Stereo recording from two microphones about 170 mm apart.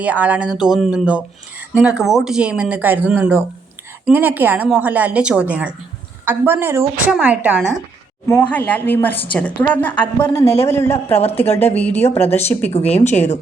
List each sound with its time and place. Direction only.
0.0 s a woman's voice: 10° right (ahead or behind)
8.3 s a woman's voice: 10° left (ahead or behind)
11.2 s a woman's voice: 35° left (ahead or behind)
11.7 s a woman's voice: 10° left (ahead or behind)
12.7 s a woman's voice: 35° left (ahead or behind)